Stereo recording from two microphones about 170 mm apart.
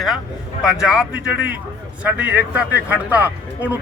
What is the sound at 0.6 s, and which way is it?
Speech, 5° right (ahead or behind).